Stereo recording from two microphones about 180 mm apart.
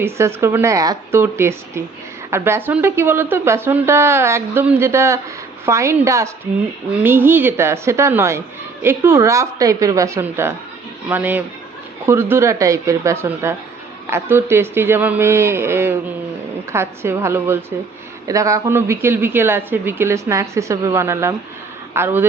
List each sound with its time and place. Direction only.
0.0 s speech: 15° right (ahead or behind)